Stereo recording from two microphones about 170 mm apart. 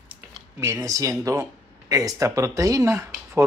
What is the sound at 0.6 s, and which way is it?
Speech, 15° right (ahead or behind).